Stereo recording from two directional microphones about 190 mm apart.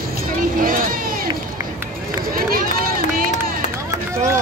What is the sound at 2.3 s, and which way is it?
Run, 50° right (ahead or behind).